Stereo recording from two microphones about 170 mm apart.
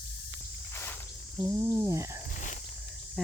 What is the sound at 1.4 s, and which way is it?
Speech, 15° right (ahead or behind).